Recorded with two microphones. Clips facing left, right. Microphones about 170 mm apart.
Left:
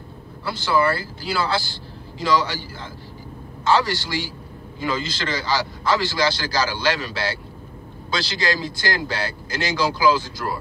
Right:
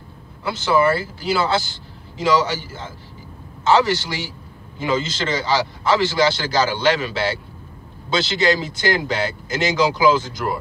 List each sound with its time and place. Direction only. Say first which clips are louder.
0.5 s a man's voice: right 3 dB; 20° right (ahead or behind)